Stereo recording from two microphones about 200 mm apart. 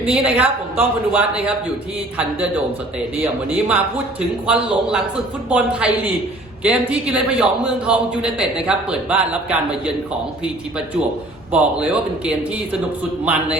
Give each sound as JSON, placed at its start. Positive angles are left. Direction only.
{"t": 0.0, "sound": "speech", "side_deg": -5}
{"t": 3.2, "sound": "a man's voice", "side_deg": -10}
{"t": 11.5, "sound": "speech", "side_deg": -5}